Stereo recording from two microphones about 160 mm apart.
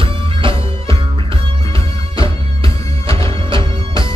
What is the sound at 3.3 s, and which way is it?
Music, 30° right (ahead or behind).